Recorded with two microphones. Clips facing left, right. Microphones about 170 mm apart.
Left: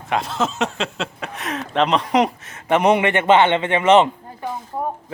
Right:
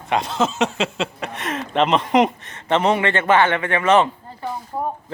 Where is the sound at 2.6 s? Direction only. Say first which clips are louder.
Left 2 dB; 15° left (ahead or behind).